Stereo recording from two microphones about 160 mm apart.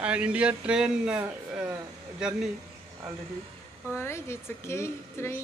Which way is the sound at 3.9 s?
15° left (ahead or behind).